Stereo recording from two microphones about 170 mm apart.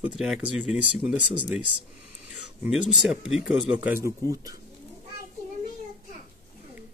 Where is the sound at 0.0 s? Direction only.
5° right (ahead or behind).